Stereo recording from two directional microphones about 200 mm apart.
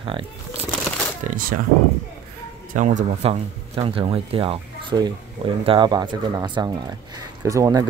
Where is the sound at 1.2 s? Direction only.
45° right (ahead or behind).